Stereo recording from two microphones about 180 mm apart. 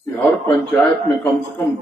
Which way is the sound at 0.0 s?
5° left (ahead or behind).